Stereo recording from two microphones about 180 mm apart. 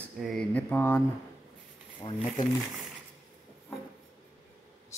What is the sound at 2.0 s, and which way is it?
Speech, 30° left (ahead or behind).